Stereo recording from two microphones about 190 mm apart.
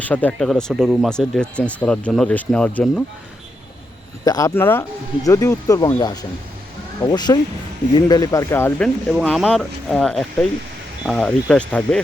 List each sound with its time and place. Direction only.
0.0 s speech: 10° left (ahead or behind)
4.2 s speech: 20° left (ahead or behind)
9.0 s speech: centre (ahead or behind)